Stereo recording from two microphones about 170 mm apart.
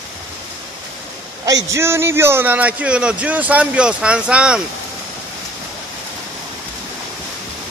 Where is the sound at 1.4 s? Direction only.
20° right (ahead or behind).